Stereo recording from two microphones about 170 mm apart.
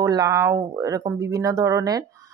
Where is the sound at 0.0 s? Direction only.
20° right (ahead or behind).